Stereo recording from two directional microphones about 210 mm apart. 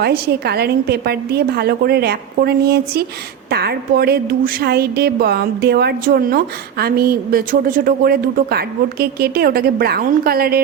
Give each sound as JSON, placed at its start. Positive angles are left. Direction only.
{"t": 0.0, "sound": "a woman's voice", "side_deg": -50}